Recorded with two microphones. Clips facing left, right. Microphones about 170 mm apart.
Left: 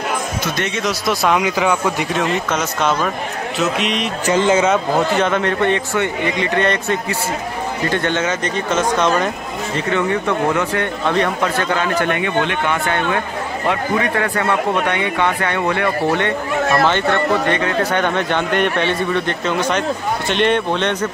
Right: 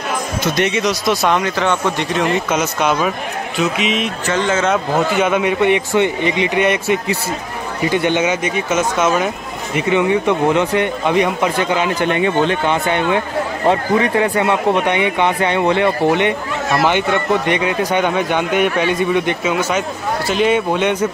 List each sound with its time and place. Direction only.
0.8 s a man's voice: centre (ahead or behind)
2.5 s speech: 5° right (ahead or behind)
4.3 s a man's voice: 15° left (ahead or behind)
4.6 s a man's voice: 5° right (ahead or behind)
9.8 s a man's voice: 15° right (ahead or behind)